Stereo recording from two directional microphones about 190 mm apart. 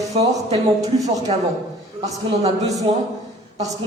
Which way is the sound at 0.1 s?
30° right (ahead or behind).